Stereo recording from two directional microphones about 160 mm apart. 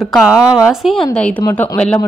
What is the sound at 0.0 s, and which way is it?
A woman's voice, centre (ahead or behind).